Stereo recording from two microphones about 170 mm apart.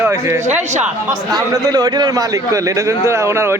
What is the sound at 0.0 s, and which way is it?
Speech, 15° right (ahead or behind).